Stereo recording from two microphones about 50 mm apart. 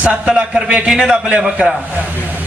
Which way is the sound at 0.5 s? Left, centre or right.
Centre.